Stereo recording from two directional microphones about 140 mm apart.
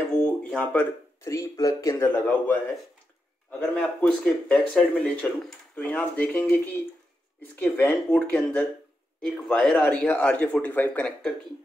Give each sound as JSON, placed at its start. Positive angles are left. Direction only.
{"t": 0.5, "sound": "speech", "side_deg": 5}
{"t": 1.2, "sound": "speech", "side_deg": 20}
{"t": 2.2, "sound": "speech", "side_deg": 10}